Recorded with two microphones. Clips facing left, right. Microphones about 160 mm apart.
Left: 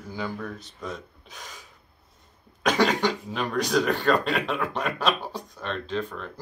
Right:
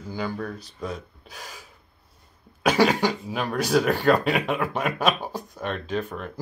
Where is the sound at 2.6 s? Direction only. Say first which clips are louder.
Right 2 dB; 10° right (ahead or behind).